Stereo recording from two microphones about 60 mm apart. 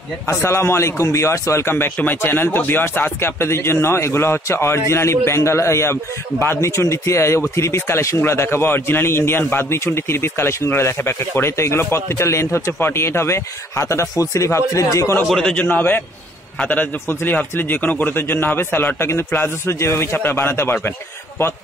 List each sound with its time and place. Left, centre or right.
0.3 s speech: left
2.0 s speech: left
14.1 s speech: left
15.5 s a man's voice: left
17.1 s a man's voice: left